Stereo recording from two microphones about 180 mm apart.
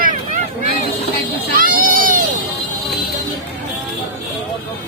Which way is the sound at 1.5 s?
50° right (ahead or behind).